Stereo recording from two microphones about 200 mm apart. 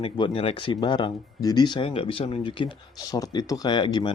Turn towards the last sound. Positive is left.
turn(degrees=25)  # may be behind; listen again after turning